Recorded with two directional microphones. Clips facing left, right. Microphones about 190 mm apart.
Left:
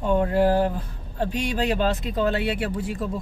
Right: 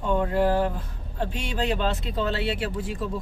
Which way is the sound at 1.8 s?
45° left (ahead or behind).